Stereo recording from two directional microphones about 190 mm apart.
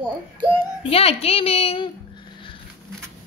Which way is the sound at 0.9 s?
30° left (ahead or behind).